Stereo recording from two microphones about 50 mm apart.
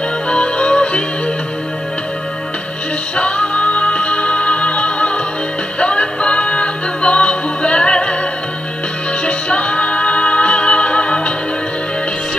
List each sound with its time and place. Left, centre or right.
0.3 s music: left
3.2 s music: left
9.2 s music: left